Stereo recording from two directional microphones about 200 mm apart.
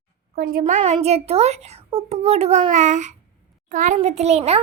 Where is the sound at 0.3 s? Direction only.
50° right (ahead or behind).